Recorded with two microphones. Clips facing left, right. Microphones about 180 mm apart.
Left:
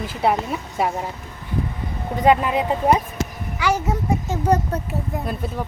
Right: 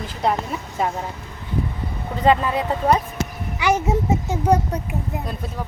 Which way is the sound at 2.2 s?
15° left (ahead or behind).